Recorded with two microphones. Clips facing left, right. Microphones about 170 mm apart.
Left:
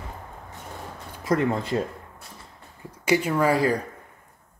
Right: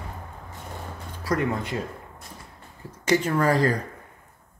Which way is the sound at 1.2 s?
25° left (ahead or behind).